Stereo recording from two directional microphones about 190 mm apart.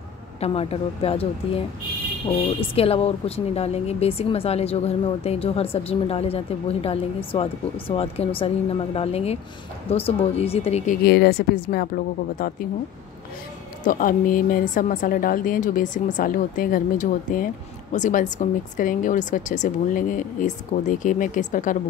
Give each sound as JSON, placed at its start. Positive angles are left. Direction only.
{"t": 0.4, "sound": "speech", "side_deg": 30}
{"t": 11.1, "sound": "speech", "side_deg": 55}
{"t": 13.8, "sound": "speech", "side_deg": 45}